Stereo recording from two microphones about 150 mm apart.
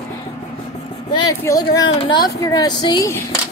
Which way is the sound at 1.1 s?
25° left (ahead or behind).